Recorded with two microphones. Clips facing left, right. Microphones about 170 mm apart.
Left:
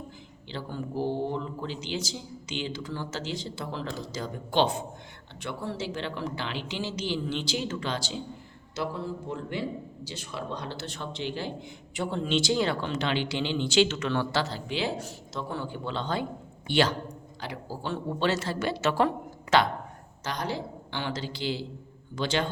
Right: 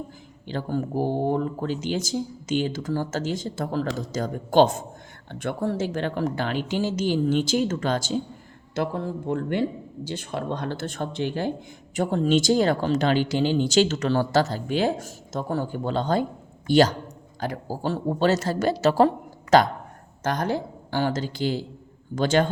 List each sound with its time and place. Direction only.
0.4 s a woman's voice: 45° right (ahead or behind)
20.2 s speech: 50° right (ahead or behind)